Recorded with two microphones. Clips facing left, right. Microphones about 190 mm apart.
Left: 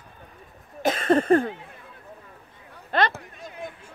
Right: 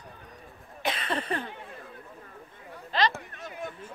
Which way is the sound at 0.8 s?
45° left (ahead or behind).